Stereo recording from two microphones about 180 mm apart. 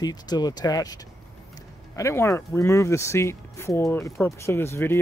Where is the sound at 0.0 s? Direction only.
20° left (ahead or behind).